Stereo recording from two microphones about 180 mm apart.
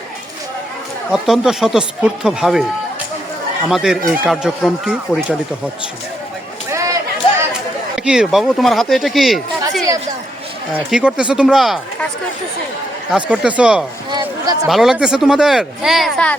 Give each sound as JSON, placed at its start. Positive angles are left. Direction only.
{"t": 1.1, "sound": "speech", "side_deg": 0}
{"t": 3.7, "sound": "speech", "side_deg": 0}
{"t": 6.7, "sound": "a sound", "side_deg": -15}
{"t": 7.9, "sound": "speech", "side_deg": -5}
{"t": 13.1, "sound": "speech", "side_deg": -5}
{"t": 14.1, "sound": "speech", "side_deg": -20}
{"t": 14.7, "sound": "speech", "side_deg": 0}